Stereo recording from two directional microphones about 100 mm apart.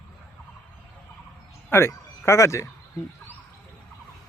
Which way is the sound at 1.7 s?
30° left (ahead or behind).